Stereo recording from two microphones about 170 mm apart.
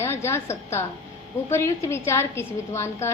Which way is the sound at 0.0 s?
15° left (ahead or behind).